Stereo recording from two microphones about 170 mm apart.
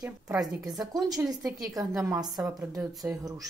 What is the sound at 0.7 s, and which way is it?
Speech, 20° right (ahead or behind).